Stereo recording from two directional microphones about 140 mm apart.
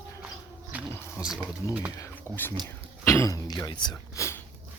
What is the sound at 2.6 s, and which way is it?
Throat clearing, 20° left (ahead or behind).